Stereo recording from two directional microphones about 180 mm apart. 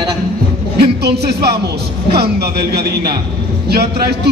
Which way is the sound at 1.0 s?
65° right (ahead or behind).